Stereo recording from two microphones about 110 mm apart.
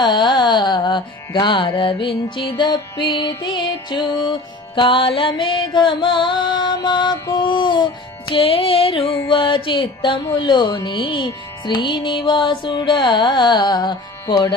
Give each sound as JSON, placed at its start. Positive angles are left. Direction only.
{"t": 0.0, "sound": "carnatic music", "side_deg": 45}
{"t": 8.3, "sound": "music", "side_deg": 55}
{"t": 9.2, "sound": "carnatic music", "side_deg": 50}